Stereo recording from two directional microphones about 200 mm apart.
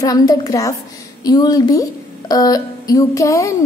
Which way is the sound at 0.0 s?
20° left (ahead or behind).